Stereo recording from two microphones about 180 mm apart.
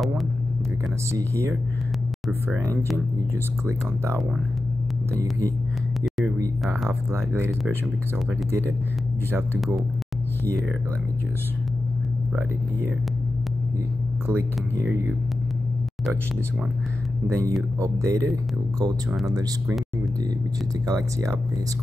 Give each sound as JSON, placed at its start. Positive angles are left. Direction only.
{"t": 1.1, "sound": "speech", "side_deg": -15}
{"t": 3.6, "sound": "speech", "side_deg": -15}
{"t": 6.9, "sound": "speech", "side_deg": -15}
{"t": 14.2, "sound": "speech", "side_deg": -15}
{"t": 17.3, "sound": "speech", "side_deg": -15}
{"t": 20.8, "sound": "speech", "side_deg": -20}